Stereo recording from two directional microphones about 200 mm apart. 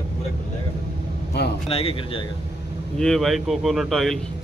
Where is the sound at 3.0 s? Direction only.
Centre (ahead or behind).